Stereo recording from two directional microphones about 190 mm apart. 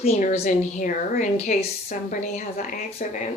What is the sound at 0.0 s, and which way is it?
A woman's voice, 35° left (ahead or behind).